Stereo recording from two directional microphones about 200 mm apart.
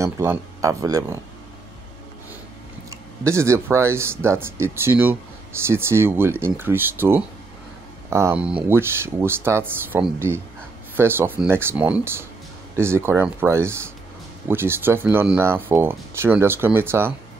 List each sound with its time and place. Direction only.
0.0 s speech: 15° right (ahead or behind)
3.3 s speech: 15° right (ahead or behind)